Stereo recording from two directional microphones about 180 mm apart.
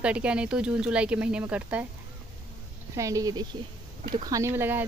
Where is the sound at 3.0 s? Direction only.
20° right (ahead or behind).